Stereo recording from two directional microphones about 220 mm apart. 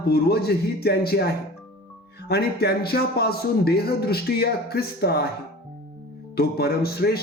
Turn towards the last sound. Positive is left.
turn(degrees=45)  # may be behind; listen again after turning